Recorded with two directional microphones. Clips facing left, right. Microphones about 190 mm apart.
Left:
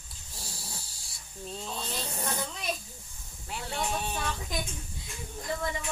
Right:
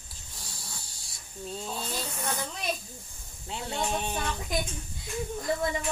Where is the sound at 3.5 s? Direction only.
20° right (ahead or behind).